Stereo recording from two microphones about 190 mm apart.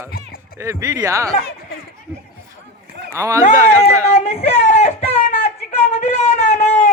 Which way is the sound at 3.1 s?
15° right (ahead or behind).